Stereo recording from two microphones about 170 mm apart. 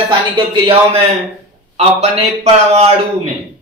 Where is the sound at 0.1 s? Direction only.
30° right (ahead or behind).